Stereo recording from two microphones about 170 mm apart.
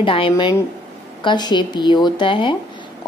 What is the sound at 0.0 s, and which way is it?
Speech, 30° left (ahead or behind).